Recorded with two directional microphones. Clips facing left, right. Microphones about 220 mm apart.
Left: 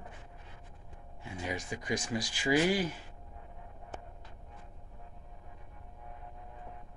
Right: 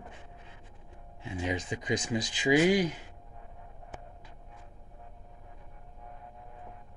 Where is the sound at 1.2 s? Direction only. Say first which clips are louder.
Right 5 dB; 20° right (ahead or behind).